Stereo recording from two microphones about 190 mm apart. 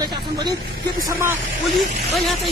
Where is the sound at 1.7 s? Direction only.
Centre (ahead or behind).